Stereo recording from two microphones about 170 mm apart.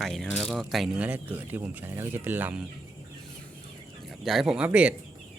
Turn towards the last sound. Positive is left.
turn(degrees=-5)  # may be behind; listen again after turning